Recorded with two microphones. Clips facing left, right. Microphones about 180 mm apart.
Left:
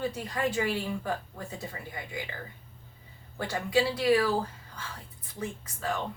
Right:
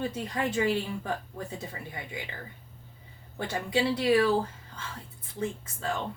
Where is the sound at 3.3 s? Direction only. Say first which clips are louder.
Left 2 dB; 20° right (ahead or behind).